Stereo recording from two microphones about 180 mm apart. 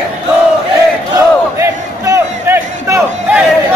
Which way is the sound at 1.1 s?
15° right (ahead or behind).